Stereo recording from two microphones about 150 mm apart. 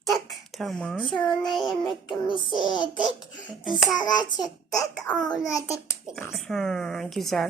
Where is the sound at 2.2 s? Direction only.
35° left (ahead or behind).